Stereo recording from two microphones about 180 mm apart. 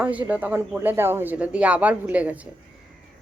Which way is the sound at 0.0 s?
10° right (ahead or behind).